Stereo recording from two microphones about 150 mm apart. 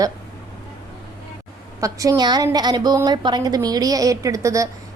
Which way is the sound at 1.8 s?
20° right (ahead or behind).